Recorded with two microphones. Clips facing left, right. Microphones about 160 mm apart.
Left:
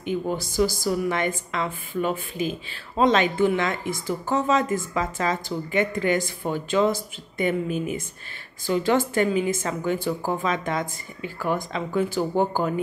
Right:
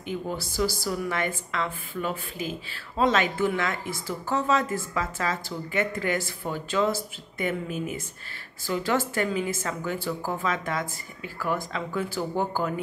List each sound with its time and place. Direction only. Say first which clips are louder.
0.8 s a woman's voice: left 4 dB; 20° left (ahead or behind)